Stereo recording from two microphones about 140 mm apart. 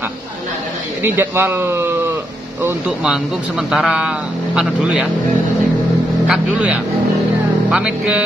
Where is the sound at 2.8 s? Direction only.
5° right (ahead or behind).